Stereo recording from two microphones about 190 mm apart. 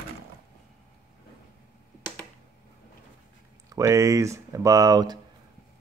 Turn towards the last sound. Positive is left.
turn(degrees=-20)  # may be behind; listen again after turning